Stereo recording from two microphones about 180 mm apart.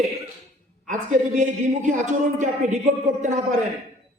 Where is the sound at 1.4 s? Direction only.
45° right (ahead or behind).